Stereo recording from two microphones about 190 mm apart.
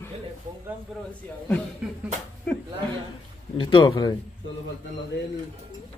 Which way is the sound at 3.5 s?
25° left (ahead or behind).